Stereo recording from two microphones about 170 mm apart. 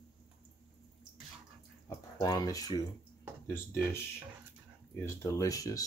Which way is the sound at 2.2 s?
20° left (ahead or behind).